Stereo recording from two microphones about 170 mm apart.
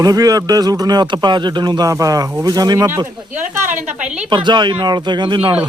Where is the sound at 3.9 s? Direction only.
5° right (ahead or behind).